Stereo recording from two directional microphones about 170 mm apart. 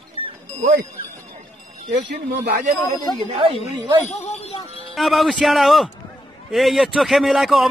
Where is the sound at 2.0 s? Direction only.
70° right (ahead or behind).